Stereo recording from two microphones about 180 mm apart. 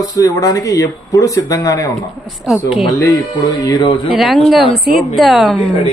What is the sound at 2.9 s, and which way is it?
Speech, 20° left (ahead or behind).